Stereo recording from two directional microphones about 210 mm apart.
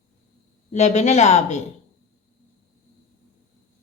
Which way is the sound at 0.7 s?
35° left (ahead or behind).